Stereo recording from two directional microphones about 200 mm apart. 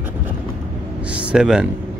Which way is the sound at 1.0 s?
5° right (ahead or behind).